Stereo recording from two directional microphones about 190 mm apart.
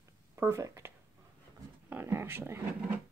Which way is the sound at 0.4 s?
15° right (ahead or behind).